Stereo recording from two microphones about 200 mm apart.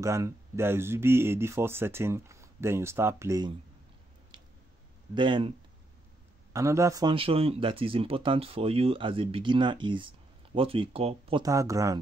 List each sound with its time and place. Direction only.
0.0 s speech: 15° right (ahead or behind)
5.1 s speech: 25° right (ahead or behind)
6.5 s speech: 15° right (ahead or behind)